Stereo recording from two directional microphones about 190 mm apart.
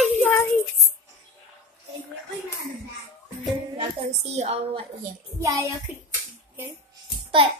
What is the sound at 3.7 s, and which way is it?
A woman's voice, 35° right (ahead or behind).